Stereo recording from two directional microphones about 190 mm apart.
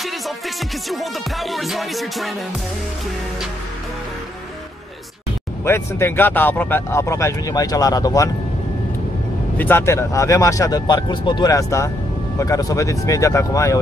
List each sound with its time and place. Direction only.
0.8 s music: centre (ahead or behind)
5.7 s speech: 10° left (ahead or behind)
9.6 s speech: 10° left (ahead or behind)